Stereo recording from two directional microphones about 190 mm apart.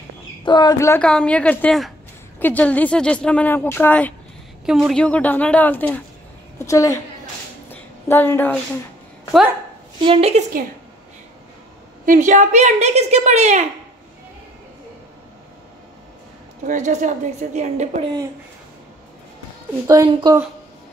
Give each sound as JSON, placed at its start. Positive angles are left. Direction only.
{"t": 0.5, "sound": "a woman's voice", "side_deg": 20}
{"t": 1.0, "sound": "a woman's voice", "side_deg": 5}
{"t": 7.7, "sound": "a sound", "side_deg": 10}
{"t": 10.0, "sound": "a woman's voice", "side_deg": -30}
{"t": 12.1, "sound": "a woman's voice", "side_deg": -40}
{"t": 16.6, "sound": "a woman's voice", "side_deg": -40}
{"t": 18.0, "sound": "speech", "side_deg": -20}
{"t": 20.1, "sound": "speech", "side_deg": -25}